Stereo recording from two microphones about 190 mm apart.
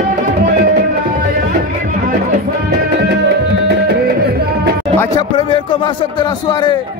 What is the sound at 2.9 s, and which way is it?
Music, 60° right (ahead or behind).